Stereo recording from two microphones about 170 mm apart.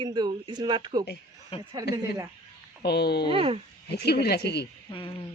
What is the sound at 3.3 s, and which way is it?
Speech, 35° right (ahead or behind).